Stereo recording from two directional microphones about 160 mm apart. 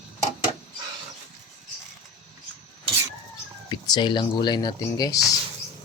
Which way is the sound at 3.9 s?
30° left (ahead or behind).